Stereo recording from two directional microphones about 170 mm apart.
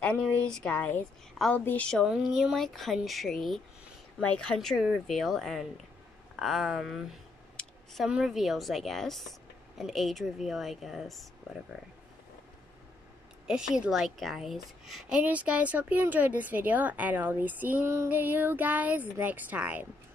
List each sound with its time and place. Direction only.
0.0 s a woman's voice: 5° left (ahead or behind)
13.5 s a woman's voice: 5° right (ahead or behind)